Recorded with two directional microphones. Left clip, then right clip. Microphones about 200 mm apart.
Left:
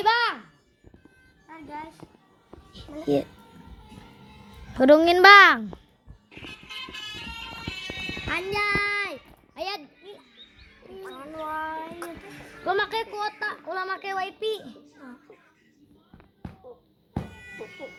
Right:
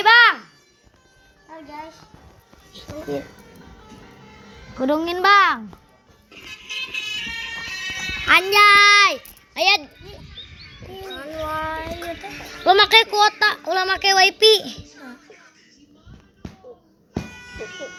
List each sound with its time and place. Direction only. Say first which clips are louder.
0.0 s a sound: right 10 dB; 5° right (ahead or behind)
4.8 s a child's voice: left 5 dB; 60° left (ahead or behind)
6.3 s music: right 7 dB; centre (ahead or behind)
8.3 s a child's voice: right 14 dB; 15° right (ahead or behind)
11.1 s child singing: right 8 dB; 5° right (ahead or behind)
11.4 s speech: right 5 dB; 5° right (ahead or behind)
14.2 s speech: right 16 dB; 25° right (ahead or behind)